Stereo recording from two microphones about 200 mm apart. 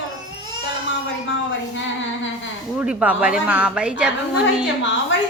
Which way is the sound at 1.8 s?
70° left (ahead or behind).